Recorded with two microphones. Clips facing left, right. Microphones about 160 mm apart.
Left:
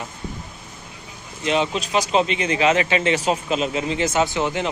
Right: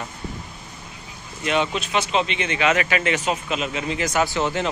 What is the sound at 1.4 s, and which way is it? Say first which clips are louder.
Speech: left 1 dB; 30° left (ahead or behind).